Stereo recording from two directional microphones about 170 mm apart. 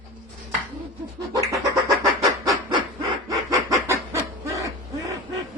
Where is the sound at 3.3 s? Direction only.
20° right (ahead or behind).